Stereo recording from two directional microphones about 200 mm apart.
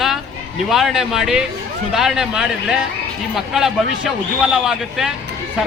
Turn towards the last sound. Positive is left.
turn(degrees=-5)  # may be behind; listen again after turning